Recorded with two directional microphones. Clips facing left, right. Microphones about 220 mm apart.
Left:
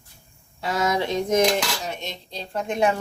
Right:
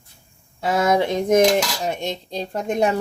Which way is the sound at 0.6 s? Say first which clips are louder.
Right 5 dB; 50° right (ahead or behind).